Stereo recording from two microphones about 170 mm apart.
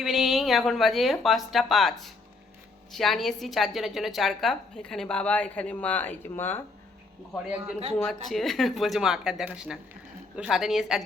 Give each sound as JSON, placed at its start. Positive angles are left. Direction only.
{"t": 0.0, "sound": "a woman's voice", "side_deg": 0}
{"t": 8.0, "sound": "a woman's voice", "side_deg": 0}